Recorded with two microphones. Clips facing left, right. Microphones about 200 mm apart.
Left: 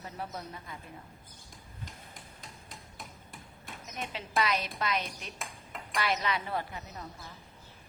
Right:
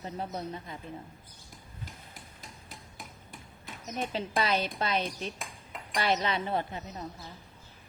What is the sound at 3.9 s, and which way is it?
A woman's voice, 30° right (ahead or behind).